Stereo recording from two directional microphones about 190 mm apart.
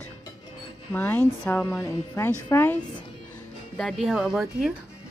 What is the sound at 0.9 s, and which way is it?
Speech, 10° left (ahead or behind).